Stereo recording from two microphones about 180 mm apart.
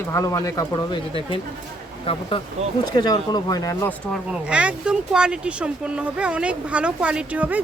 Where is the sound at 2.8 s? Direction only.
25° left (ahead or behind).